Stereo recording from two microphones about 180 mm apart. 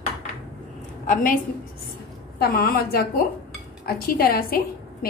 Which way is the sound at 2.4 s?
55° left (ahead or behind).